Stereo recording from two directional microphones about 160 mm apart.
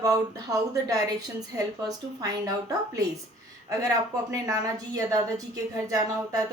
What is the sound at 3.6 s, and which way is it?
A woman's voice, 20° right (ahead or behind).